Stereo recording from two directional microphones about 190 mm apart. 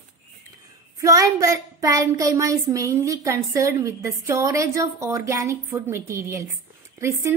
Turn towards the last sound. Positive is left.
turn(degrees=-15)  # may be behind; listen again after turning